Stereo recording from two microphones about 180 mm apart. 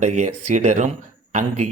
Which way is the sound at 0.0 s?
40° right (ahead or behind).